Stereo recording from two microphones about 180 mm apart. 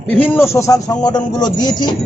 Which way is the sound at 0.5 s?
15° left (ahead or behind).